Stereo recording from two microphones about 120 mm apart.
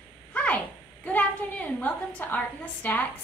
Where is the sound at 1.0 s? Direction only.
15° left (ahead or behind).